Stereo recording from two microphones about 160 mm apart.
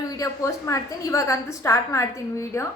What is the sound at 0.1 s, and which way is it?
A woman's voice, 20° left (ahead or behind).